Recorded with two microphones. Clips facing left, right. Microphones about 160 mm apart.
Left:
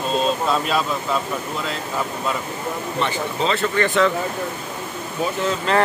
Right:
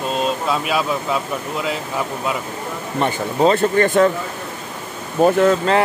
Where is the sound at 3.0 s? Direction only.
50° right (ahead or behind).